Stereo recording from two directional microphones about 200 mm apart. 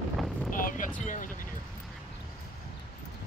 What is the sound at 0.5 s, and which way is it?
Vehicle, 45° left (ahead or behind).